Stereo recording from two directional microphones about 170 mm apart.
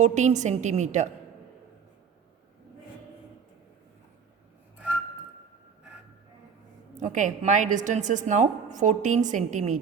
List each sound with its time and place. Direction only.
0.0 s a woman's voice: 45° right (ahead or behind)
6.9 s a woman's voice: 45° right (ahead or behind)